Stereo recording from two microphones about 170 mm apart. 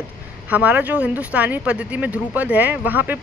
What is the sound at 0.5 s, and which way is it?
Speech, 10° right (ahead or behind).